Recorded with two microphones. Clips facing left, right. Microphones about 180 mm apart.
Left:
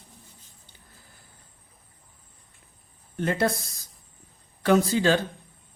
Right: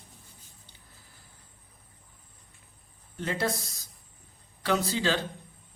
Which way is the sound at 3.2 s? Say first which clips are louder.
Left 5 dB; 55° left (ahead or behind).